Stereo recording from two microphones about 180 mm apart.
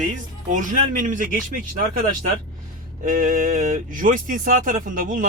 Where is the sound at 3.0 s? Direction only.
50° right (ahead or behind).